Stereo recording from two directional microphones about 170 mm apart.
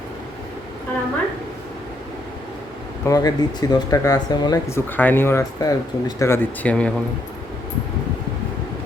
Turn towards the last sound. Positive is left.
turn(degrees=5)  # may be behind; listen again after turning